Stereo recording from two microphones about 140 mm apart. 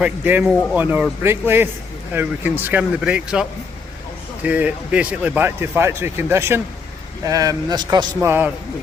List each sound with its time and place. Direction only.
0.0 s speech: 10° right (ahead or behind)
4.4 s a man's voice: 10° right (ahead or behind)